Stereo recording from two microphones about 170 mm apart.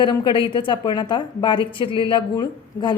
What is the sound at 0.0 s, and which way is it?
A woman's voice, 25° left (ahead or behind).